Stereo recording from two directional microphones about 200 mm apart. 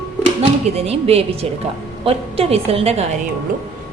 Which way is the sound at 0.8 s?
30° right (ahead or behind).